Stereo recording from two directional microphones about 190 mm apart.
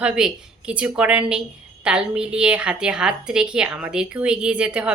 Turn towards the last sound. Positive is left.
turn(degrees=-5)  # may be behind; listen again after turning